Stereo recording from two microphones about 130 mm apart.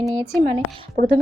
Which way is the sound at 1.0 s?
75° right (ahead or behind).